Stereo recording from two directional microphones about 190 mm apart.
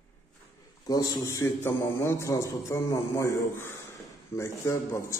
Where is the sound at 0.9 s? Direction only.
20° left (ahead or behind).